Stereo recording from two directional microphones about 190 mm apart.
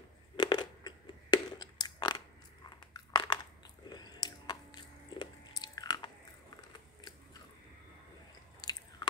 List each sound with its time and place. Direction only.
0.4 s a sound: 20° left (ahead or behind)
2.9 s crunch: 20° left (ahead or behind)
3.9 s biting: 20° left (ahead or behind)
8.6 s biting: 20° left (ahead or behind)